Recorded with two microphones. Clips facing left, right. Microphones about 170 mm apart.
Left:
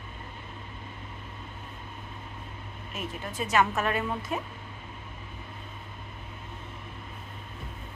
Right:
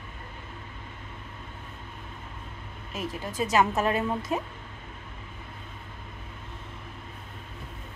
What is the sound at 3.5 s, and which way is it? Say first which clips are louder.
Speech: right 2 dB; 20° right (ahead or behind).